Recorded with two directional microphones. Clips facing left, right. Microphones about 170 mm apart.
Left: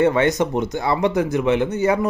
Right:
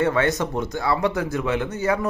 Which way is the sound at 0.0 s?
20° left (ahead or behind).